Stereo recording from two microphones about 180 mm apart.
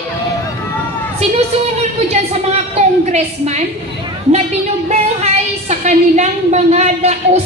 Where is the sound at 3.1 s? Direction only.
40° right (ahead or behind).